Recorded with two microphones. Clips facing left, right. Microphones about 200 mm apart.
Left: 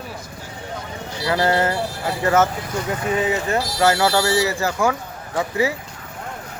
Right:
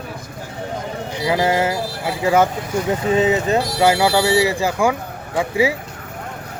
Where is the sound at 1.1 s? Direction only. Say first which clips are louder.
Right 1 dB; 15° right (ahead or behind).